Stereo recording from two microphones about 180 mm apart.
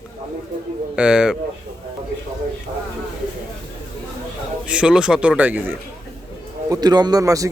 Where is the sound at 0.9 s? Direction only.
5° right (ahead or behind).